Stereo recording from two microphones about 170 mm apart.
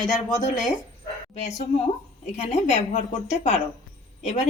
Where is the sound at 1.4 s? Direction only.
40° left (ahead or behind).